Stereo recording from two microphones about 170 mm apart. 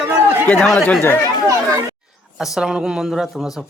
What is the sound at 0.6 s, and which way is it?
Speech, 5° left (ahead or behind).